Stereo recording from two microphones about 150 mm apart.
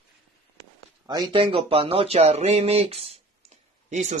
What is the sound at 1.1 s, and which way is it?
Speech, 30° right (ahead or behind).